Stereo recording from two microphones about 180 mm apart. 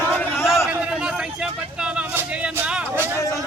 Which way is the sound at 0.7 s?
5° right (ahead or behind).